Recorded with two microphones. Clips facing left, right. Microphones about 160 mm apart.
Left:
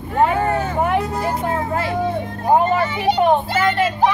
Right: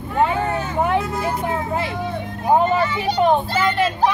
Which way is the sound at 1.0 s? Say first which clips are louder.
Left 1 dB; 35° left (ahead or behind).